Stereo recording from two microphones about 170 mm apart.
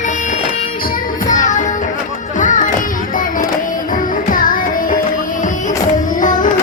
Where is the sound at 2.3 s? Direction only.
50° left (ahead or behind).